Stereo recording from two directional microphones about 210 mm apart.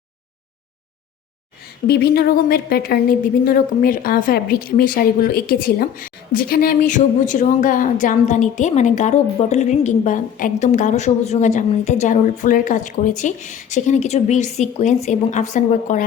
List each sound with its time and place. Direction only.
1.9 s a woman's voice: 50° left (ahead or behind)